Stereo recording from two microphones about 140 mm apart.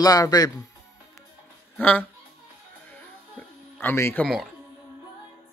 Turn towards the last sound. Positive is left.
turn(degrees=15)  # may be behind; listen again after turning